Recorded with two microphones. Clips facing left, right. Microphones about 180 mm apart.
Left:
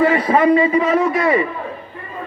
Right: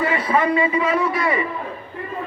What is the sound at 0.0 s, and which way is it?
A man's voice, 30° left (ahead or behind).